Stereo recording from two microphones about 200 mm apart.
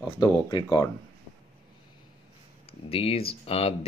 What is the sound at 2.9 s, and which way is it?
Speech, 30° left (ahead or behind).